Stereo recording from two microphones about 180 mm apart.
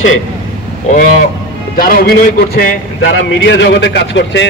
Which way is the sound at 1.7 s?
55° left (ahead or behind).